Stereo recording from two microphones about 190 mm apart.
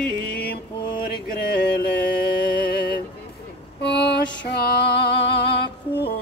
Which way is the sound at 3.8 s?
60° left (ahead or behind).